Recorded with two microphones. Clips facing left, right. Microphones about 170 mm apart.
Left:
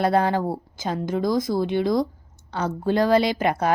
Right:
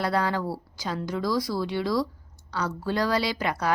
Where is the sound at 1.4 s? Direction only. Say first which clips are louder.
Left 5 dB; 50° left (ahead or behind).